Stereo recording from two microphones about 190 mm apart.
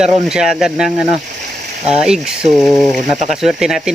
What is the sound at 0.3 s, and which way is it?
Speech, 5° right (ahead or behind).